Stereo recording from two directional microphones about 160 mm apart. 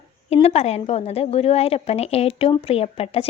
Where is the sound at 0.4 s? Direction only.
40° left (ahead or behind).